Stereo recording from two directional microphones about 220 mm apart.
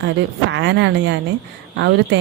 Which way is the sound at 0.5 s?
55° right (ahead or behind).